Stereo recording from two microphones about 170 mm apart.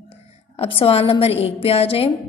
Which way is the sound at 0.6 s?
30° left (ahead or behind).